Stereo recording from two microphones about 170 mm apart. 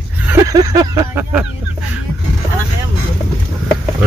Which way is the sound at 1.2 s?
10° right (ahead or behind).